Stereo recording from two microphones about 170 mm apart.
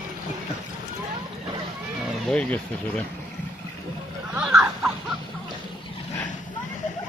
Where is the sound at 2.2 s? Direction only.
5° left (ahead or behind).